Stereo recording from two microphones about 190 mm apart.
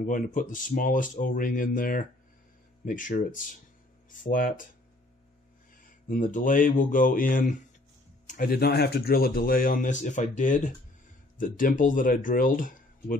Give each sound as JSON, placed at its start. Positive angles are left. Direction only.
{"t": 0.0, "sound": "speech", "side_deg": 45}
{"t": 6.0, "sound": "speech", "side_deg": 45}